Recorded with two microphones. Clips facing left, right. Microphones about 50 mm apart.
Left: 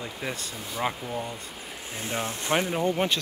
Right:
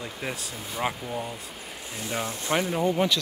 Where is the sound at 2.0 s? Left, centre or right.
Left.